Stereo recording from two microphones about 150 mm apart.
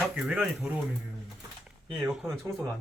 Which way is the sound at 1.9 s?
5° right (ahead or behind).